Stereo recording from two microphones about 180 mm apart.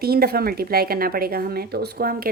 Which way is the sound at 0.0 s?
55° right (ahead or behind).